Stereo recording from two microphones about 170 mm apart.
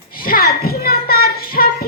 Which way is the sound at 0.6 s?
65° left (ahead or behind).